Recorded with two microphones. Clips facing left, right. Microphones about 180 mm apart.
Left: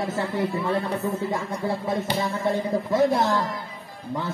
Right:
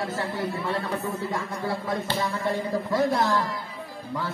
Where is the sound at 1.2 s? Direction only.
20° left (ahead or behind).